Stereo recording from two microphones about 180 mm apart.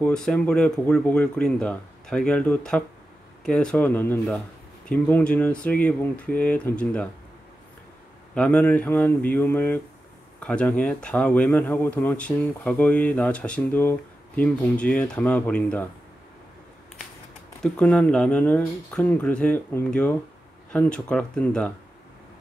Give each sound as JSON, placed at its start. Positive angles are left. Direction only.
{"t": 0.0, "sound": "speech", "side_deg": 5}
{"t": 8.4, "sound": "speech", "side_deg": 10}
{"t": 17.6, "sound": "speech", "side_deg": 5}